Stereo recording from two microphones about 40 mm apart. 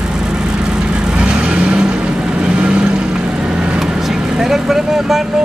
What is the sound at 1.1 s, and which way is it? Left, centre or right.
Vehicle, right.